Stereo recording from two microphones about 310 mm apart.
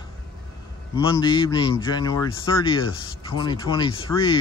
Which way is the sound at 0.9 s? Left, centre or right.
Centre.